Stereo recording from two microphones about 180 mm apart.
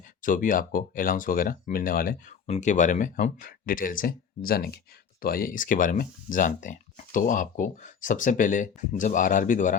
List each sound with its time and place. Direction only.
0.2 s speech: 50° left (ahead or behind)
2.5 s speech: 40° left (ahead or behind)